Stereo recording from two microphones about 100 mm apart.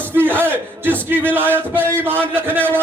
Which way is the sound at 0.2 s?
20° right (ahead or behind).